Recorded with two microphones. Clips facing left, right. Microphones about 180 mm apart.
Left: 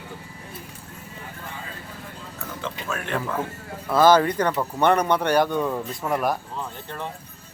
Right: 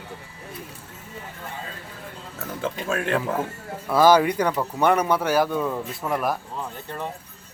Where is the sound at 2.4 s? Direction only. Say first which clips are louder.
Right 5 dB; 45° right (ahead or behind).